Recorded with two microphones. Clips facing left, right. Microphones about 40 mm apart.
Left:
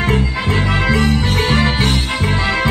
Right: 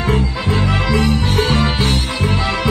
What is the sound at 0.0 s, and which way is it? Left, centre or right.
Music, left.